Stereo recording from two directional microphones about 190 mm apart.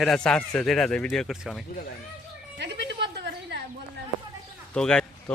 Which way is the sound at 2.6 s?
65° right (ahead or behind).